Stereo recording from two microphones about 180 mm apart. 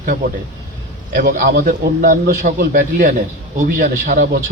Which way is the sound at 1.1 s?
50° right (ahead or behind).